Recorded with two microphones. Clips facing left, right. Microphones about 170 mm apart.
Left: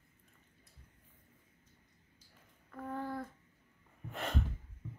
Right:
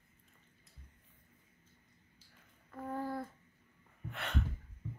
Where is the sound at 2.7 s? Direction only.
10° right (ahead or behind).